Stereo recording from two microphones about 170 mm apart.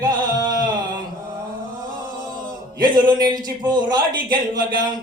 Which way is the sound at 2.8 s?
25° right (ahead or behind).